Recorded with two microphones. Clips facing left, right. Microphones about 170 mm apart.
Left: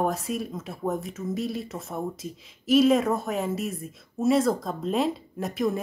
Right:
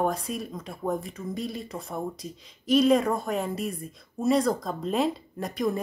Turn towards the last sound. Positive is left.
turn(degrees=0)  # may be behind; listen again after turning